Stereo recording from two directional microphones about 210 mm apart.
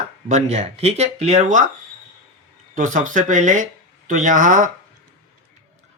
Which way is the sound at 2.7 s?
40° right (ahead or behind).